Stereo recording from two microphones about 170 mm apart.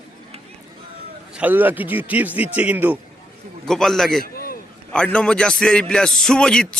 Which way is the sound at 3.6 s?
Centre (ahead or behind).